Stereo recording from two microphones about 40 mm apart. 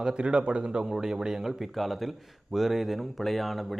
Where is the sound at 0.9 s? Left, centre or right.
Centre.